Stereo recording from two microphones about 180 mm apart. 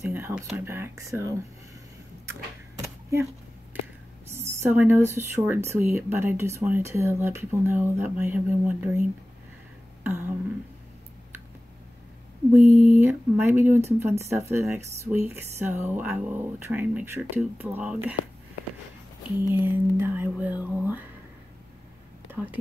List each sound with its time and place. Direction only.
0.0 s a sound: 10° right (ahead or behind)
0.5 s speech: 10° right (ahead or behind)
2.8 s a sound: 15° right (ahead or behind)
4.3 s a woman's voice: 15° right (ahead or behind)
10.0 s a sound: 10° right (ahead or behind)
12.6 s speech: 40° right (ahead or behind)
13.0 s speech: 10° right (ahead or behind)
19.4 s speech: 10° right (ahead or behind)
22.3 s speech: 10° right (ahead or behind)